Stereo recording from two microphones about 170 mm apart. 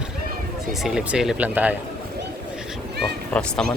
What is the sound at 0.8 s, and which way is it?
Speech, 5° right (ahead or behind).